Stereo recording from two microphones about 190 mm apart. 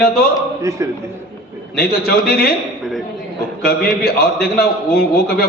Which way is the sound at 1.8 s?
55° left (ahead or behind).